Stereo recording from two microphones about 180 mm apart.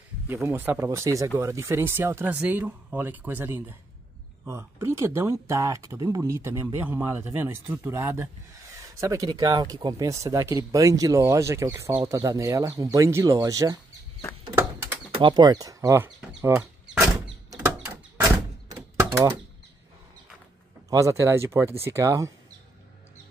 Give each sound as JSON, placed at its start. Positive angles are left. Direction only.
{"t": 0.3, "sound": "speech", "side_deg": -10}
{"t": 14.5, "sound": "bird", "side_deg": -15}
{"t": 15.0, "sound": "speech", "side_deg": -30}
{"t": 16.2, "sound": "speech", "side_deg": -5}
{"t": 18.7, "sound": "a sound", "side_deg": -25}
{"t": 20.9, "sound": "speech", "side_deg": -15}